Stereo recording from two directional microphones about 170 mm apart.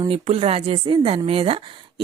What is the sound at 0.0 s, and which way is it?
Speech, 35° right (ahead or behind).